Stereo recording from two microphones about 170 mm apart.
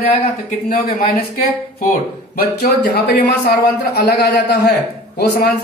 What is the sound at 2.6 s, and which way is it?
Speech, 65° left (ahead or behind).